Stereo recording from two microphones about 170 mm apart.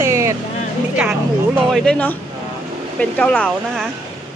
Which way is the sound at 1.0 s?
5° right (ahead or behind).